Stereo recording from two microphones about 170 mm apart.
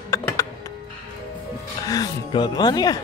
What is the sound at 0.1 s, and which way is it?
Music, 15° left (ahead or behind).